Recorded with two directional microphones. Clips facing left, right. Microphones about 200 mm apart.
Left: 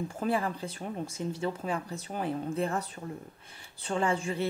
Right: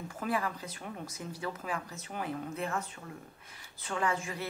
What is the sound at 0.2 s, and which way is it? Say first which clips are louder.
Speech: left 3 dB; 30° left (ahead or behind).